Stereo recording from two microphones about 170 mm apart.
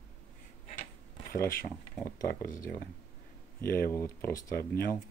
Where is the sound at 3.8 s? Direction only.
15° left (ahead or behind).